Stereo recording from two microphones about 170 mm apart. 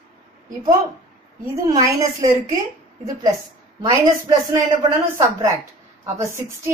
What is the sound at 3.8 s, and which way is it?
Speech, 20° right (ahead or behind).